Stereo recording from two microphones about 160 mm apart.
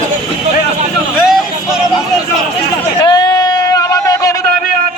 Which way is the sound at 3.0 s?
25° left (ahead or behind).